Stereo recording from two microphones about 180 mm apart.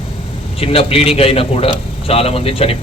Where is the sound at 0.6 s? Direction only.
30° left (ahead or behind).